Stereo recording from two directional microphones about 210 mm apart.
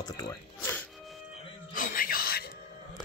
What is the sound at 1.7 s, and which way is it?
Music, 40° left (ahead or behind).